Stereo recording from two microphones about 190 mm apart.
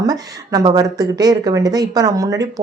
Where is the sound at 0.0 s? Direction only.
20° right (ahead or behind).